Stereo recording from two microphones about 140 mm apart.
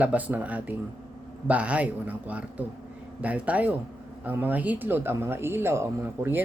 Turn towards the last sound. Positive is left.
turn(degrees=-15)  # may be behind; listen again after turning